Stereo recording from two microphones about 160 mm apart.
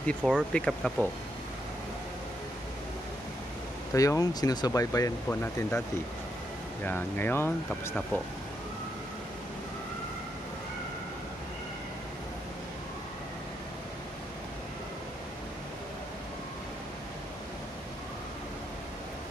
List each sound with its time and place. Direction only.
0.2 s speech: 5° right (ahead or behind)
0.5 s speech: 5° left (ahead or behind)
3.9 s speech: 20° left (ahead or behind)